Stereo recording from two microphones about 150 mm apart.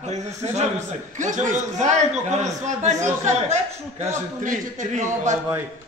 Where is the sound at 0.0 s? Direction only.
50° right (ahead or behind).